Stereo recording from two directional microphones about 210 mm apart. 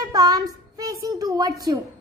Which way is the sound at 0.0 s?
15° right (ahead or behind).